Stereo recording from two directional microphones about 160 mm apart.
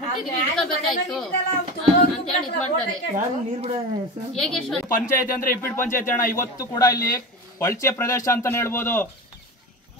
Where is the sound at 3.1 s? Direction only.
45° right (ahead or behind).